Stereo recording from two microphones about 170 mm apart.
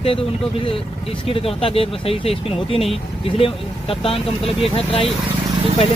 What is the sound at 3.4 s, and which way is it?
Speech, 35° left (ahead or behind).